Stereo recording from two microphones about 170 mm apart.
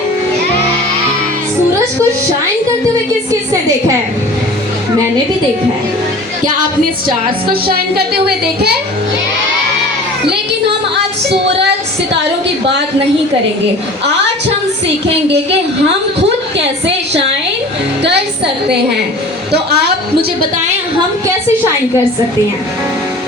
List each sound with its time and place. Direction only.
7.5 s a woman's voice: 65° right (ahead or behind)
18.0 s a woman's voice: 80° right